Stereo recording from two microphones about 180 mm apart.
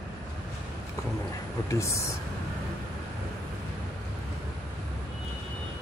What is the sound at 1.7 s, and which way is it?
Speech, 15° left (ahead or behind).